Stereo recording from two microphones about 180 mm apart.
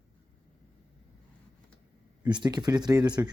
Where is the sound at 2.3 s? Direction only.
25° right (ahead or behind).